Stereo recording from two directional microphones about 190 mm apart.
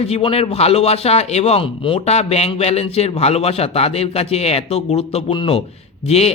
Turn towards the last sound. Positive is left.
turn(degrees=35)  # may be behind; listen again after turning